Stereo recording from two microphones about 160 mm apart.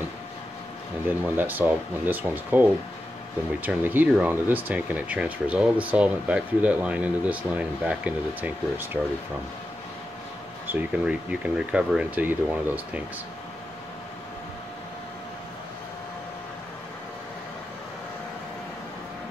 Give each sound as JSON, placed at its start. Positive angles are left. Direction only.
{"t": 1.0, "sound": "speech", "side_deg": -10}
{"t": 10.7, "sound": "speech", "side_deg": -10}